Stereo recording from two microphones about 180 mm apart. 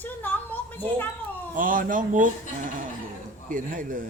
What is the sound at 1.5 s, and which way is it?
Speech, 50° right (ahead or behind).